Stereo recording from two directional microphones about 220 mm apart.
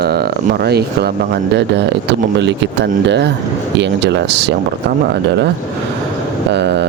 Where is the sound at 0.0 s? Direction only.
45° right (ahead or behind).